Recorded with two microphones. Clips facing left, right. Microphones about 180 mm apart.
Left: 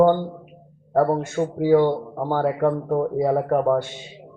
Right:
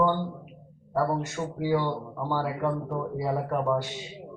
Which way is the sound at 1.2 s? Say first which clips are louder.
Left 8 dB; 50° left (ahead or behind).